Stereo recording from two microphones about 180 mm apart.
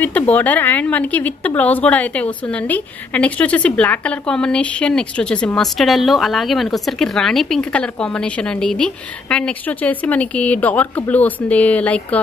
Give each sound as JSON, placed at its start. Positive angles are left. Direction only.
{"t": 0.3, "sound": "speech", "side_deg": 10}